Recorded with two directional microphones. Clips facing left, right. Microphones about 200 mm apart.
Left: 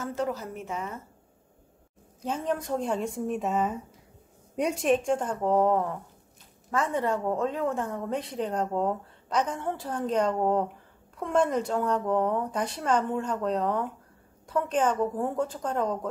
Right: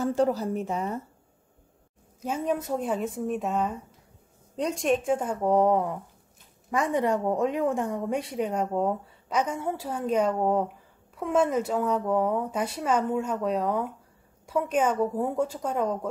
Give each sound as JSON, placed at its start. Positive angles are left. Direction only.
{"t": 0.0, "sound": "a woman's voice", "side_deg": -35}
{"t": 2.2, "sound": "a woman's voice", "side_deg": -10}